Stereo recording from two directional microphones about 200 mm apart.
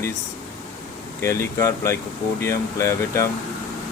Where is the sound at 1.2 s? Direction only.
15° left (ahead or behind).